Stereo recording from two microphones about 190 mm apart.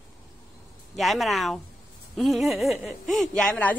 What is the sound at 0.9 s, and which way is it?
A woman's voice, centre (ahead or behind).